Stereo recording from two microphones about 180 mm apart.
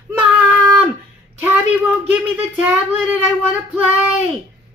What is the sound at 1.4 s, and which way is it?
Speech, 10° right (ahead or behind).